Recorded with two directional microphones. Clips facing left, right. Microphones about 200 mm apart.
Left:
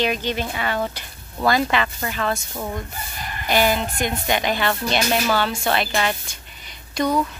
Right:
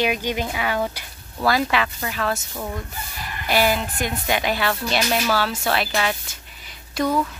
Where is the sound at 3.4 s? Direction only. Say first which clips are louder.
Left 1 dB; 5° right (ahead or behind).